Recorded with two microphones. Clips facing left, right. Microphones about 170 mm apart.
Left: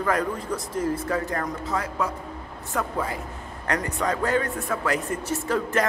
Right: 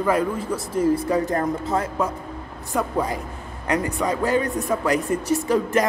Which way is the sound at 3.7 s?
10° right (ahead or behind).